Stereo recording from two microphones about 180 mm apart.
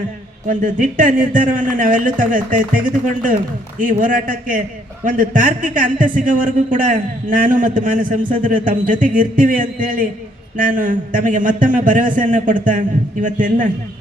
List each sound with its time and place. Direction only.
0.4 s speech: 50° right (ahead or behind)
3.8 s speech: 50° right (ahead or behind)